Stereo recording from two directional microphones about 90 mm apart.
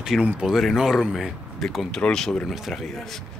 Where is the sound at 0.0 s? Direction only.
5° right (ahead or behind).